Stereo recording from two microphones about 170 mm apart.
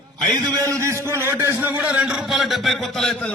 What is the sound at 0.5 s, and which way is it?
A man's voice, 20° right (ahead or behind).